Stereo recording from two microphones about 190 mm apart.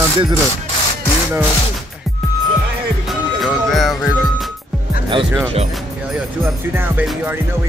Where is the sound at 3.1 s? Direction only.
Centre (ahead or behind).